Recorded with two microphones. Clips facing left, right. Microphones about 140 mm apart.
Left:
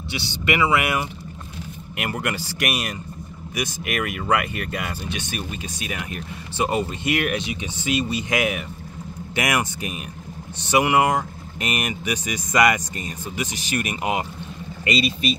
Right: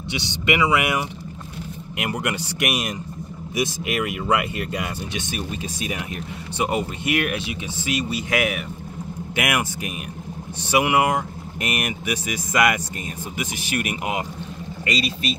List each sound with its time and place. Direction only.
0.1 s speech: 20° right (ahead or behind)
5.9 s speech: 15° right (ahead or behind)
15.0 s speech: centre (ahead or behind)